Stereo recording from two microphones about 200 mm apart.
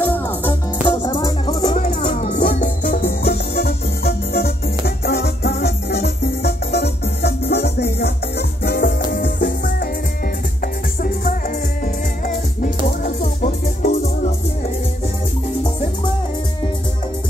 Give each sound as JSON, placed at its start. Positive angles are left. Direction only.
{"t": 0.0, "sound": "music", "side_deg": 10}
{"t": 0.5, "sound": "music", "side_deg": 20}
{"t": 1.6, "sound": "music", "side_deg": 35}